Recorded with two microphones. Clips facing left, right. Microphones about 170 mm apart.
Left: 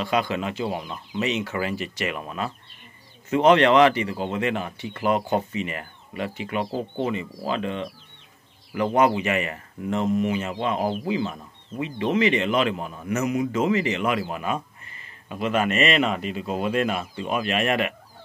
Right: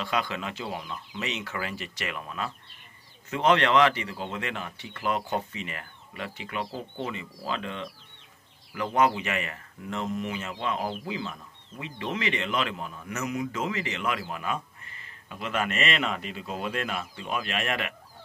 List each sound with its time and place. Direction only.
0.0 s speech: 15° left (ahead or behind)
6.6 s speech: 50° left (ahead or behind)
7.1 s speech: 15° left (ahead or behind)
8.9 s speech: 15° left (ahead or behind)